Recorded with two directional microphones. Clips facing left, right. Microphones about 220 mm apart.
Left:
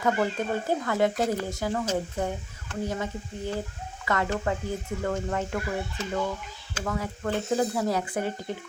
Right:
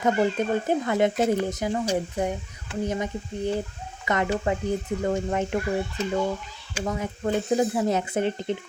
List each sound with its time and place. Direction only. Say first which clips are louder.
0.0 s speech: right 3 dB; 20° right (ahead or behind)
6.7 s speech: right 2 dB; 20° right (ahead or behind)